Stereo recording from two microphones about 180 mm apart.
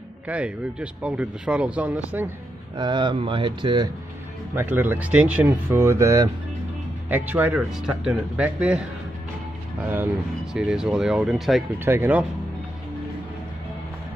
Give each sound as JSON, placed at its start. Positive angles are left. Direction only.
{"t": 0.3, "sound": "speech", "side_deg": -5}
{"t": 2.8, "sound": "speech", "side_deg": -25}
{"t": 4.6, "sound": "speech", "side_deg": -10}
{"t": 9.8, "sound": "speech", "side_deg": -5}
{"t": 11.8, "sound": "speech", "side_deg": -10}